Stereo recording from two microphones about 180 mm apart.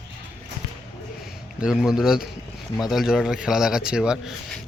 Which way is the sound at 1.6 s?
5° right (ahead or behind).